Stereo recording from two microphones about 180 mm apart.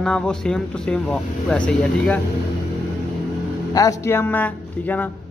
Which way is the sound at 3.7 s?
20° left (ahead or behind).